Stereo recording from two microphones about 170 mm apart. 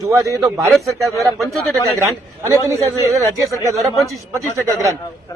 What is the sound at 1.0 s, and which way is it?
Speech, centre (ahead or behind).